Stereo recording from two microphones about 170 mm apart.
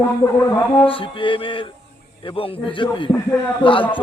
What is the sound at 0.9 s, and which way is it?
Speech, 30° left (ahead or behind).